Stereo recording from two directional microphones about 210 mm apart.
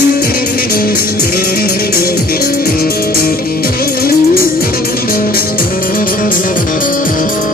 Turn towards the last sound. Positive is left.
turn(degrees=40)  # may be behind; listen again after turning